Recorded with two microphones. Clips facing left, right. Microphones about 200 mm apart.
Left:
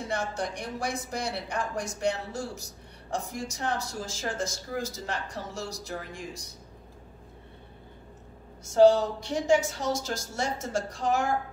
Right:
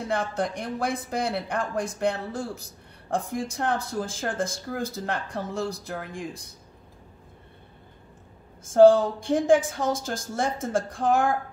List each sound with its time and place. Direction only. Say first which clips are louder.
0.1 s speech: right 5 dB; 55° right (ahead or behind)
8.6 s speech: right 4 dB; 50° right (ahead or behind)